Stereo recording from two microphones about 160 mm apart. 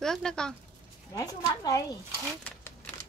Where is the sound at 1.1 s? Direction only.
20° left (ahead or behind).